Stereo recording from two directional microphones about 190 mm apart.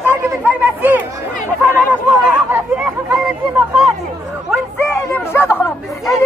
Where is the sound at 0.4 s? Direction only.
10° right (ahead or behind).